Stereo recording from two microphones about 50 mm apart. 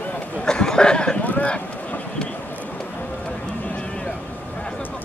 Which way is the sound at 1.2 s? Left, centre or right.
Left.